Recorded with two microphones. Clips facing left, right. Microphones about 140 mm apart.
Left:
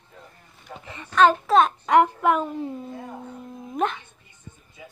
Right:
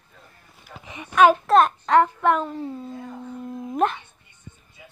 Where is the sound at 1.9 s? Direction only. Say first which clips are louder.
Even; 10° left (ahead or behind).